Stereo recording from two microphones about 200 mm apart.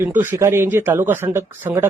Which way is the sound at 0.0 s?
10° right (ahead or behind).